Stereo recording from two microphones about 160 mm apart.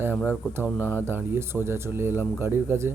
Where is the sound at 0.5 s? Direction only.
10° right (ahead or behind).